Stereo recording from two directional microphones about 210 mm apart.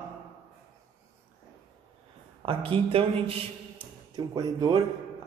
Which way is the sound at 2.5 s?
25° right (ahead or behind).